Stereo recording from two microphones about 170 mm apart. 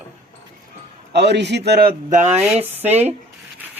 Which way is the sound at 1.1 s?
85° right.